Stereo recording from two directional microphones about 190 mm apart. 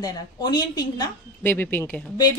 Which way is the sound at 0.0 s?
20° left (ahead or behind).